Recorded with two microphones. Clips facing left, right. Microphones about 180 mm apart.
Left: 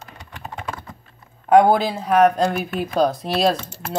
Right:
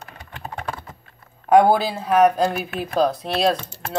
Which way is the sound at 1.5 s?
10° right (ahead or behind).